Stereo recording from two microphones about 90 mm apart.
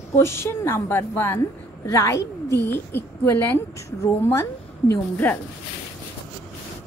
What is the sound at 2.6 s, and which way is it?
A woman's voice, 25° left (ahead or behind).